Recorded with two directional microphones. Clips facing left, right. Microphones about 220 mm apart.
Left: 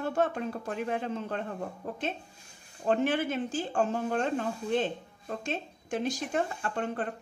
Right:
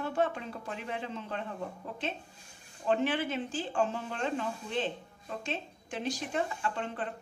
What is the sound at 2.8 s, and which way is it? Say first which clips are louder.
Speech: left 2 dB; 45° left (ahead or behind).